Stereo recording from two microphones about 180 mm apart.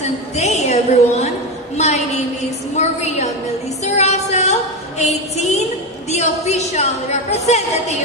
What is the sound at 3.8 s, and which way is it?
A woman's voice, 40° left (ahead or behind).